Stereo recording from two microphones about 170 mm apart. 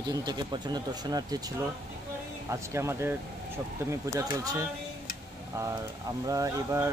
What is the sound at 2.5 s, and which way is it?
Speech, 15° right (ahead or behind).